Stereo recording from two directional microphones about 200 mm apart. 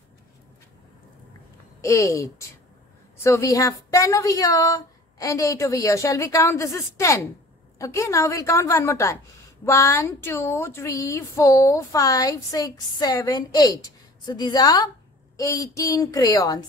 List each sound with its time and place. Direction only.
1.8 s a woman's voice: 15° left (ahead or behind)